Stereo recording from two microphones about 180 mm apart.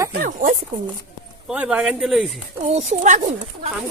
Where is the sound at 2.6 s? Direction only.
40° right (ahead or behind).